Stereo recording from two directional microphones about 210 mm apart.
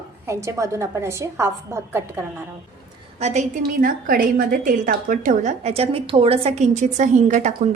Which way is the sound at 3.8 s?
40° right (ahead or behind).